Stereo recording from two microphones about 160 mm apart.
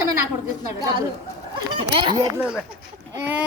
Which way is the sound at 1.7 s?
30° right (ahead or behind).